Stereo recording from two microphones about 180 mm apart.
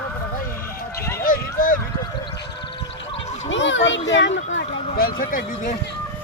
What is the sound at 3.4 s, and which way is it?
A child's voice, 90° left.